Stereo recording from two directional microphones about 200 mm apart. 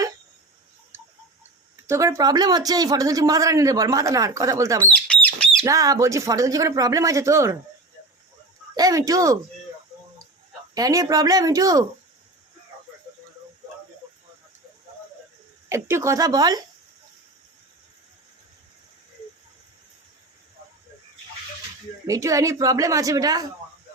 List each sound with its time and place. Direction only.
1.7 s speech: 15° right (ahead or behind)
4.8 s bird: 5° left (ahead or behind)
5.6 s speech: 15° right (ahead or behind)
8.7 s speech: 20° right (ahead or behind)
10.8 s speech: 20° right (ahead or behind)
15.7 s speech: 15° right (ahead or behind)
22.0 s speech: 15° right (ahead or behind)